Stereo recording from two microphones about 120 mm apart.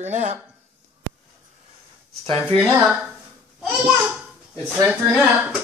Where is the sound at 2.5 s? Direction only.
50° right (ahead or behind).